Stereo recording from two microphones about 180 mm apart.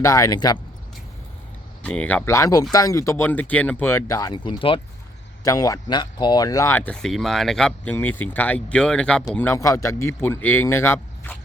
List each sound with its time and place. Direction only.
0.0 s speech: 20° left (ahead or behind)
1.8 s speech: 5° left (ahead or behind)